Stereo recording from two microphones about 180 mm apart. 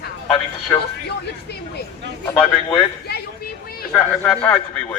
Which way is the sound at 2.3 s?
5° left (ahead or behind).